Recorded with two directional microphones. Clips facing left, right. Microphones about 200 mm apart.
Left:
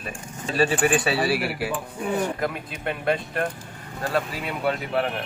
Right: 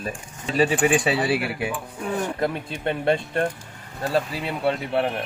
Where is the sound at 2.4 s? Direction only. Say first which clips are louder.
Right 3 dB; 30° right (ahead or behind).